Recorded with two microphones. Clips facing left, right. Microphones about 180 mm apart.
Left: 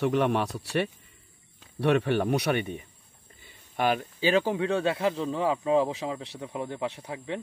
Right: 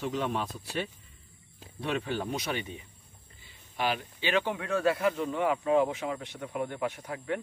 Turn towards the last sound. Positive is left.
turn(degrees=25)  # may be behind; listen again after turning